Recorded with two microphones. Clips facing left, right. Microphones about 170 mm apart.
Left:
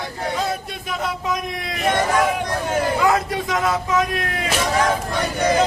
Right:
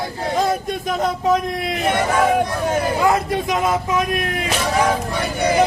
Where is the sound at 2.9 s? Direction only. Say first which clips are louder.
Right 1 dB; 25° right (ahead or behind).